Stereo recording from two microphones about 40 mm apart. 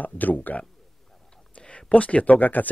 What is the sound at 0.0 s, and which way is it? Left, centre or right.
Speech, left.